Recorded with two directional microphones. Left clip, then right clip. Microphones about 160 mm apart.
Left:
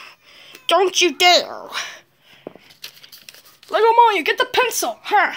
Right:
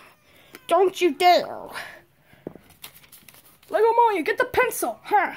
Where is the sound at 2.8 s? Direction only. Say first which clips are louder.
Left 11 dB; 55° right (ahead or behind).